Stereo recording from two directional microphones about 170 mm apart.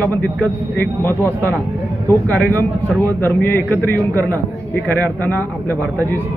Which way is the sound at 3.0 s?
10° left (ahead or behind).